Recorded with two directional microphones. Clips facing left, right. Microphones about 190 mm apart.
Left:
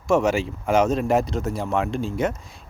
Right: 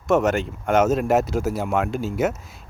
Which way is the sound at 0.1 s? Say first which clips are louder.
Even; centre (ahead or behind).